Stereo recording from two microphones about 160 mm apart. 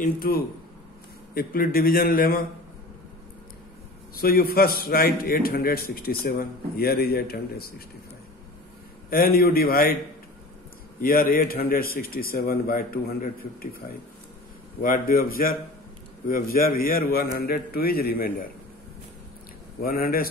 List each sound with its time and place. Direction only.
0.0 s a man's voice: 70° left (ahead or behind)
4.1 s a man's voice: 70° left (ahead or behind)
9.1 s a man's voice: 65° left (ahead or behind)
11.0 s a man's voice: 65° left (ahead or behind)
14.8 s a man's voice: 60° left (ahead or behind)
16.5 s a man's voice: 65° left (ahead or behind)
19.8 s a man's voice: 70° left (ahead or behind)